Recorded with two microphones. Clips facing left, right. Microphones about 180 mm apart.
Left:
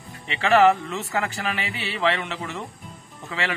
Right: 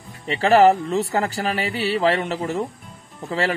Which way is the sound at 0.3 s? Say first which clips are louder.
Right 3 dB; 40° right (ahead or behind).